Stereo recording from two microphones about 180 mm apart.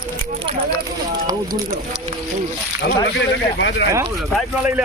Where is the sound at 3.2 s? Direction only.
80° left.